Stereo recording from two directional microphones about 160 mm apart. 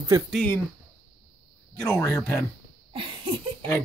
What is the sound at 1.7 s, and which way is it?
Speech, 20° left (ahead or behind).